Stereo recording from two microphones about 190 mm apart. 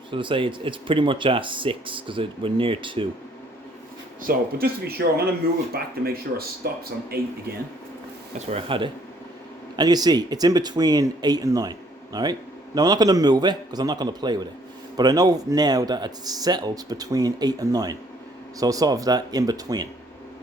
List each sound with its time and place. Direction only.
0.1 s speech: 25° right (ahead or behind)
4.2 s speech: 50° right (ahead or behind)
8.4 s speech: 25° right (ahead or behind)